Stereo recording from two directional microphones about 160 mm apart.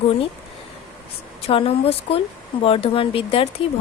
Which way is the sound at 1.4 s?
35° left (ahead or behind).